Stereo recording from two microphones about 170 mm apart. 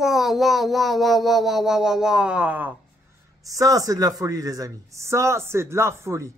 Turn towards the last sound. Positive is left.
turn(degrees=-15)  # may be behind; listen again after turning